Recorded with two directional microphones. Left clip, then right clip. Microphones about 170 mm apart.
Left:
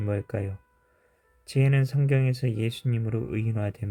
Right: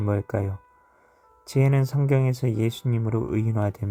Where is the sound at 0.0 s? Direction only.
15° right (ahead or behind).